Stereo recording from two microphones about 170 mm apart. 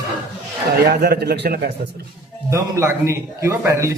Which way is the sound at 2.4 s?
15° right (ahead or behind).